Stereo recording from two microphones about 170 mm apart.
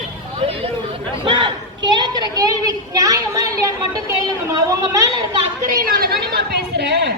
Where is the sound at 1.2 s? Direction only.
30° right (ahead or behind).